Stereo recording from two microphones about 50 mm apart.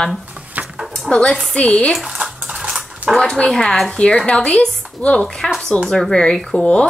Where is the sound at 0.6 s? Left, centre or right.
Right.